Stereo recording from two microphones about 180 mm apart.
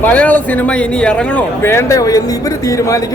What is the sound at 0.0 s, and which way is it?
A man's voice, 10° left (ahead or behind).